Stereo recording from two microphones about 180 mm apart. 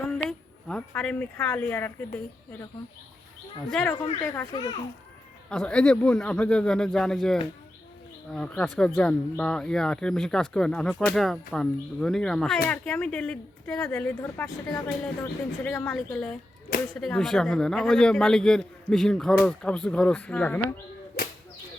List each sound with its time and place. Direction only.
0.3 s speech: 5° left (ahead or behind)
3.7 s speech: 5° left (ahead or behind)
4.5 s a child's voice: 25° left (ahead or behind)
5.5 s a man's voice: 5° left (ahead or behind)